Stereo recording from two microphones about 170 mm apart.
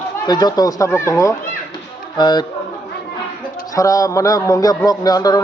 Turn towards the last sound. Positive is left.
turn(degrees=20)  # may be behind; listen again after turning